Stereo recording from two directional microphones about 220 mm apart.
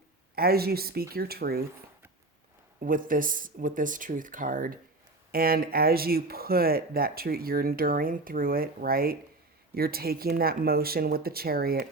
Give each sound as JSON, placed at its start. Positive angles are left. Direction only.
{"t": 0.3, "sound": "speech", "side_deg": -45}
{"t": 2.8, "sound": "speech", "side_deg": -40}